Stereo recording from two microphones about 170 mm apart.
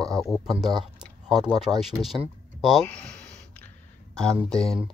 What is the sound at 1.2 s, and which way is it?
Speech, centre (ahead or behind).